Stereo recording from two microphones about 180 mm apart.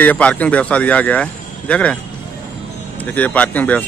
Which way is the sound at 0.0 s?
10° left (ahead or behind).